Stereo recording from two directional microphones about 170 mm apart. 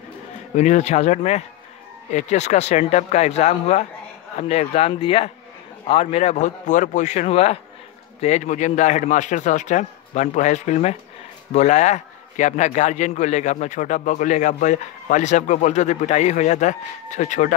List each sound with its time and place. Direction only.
0.6 s a man's voice: 40° left (ahead or behind)